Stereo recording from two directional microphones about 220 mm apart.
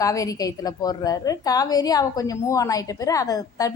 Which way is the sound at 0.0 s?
15° left (ahead or behind).